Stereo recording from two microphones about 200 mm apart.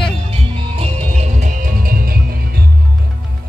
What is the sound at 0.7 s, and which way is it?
Music, 30° right (ahead or behind).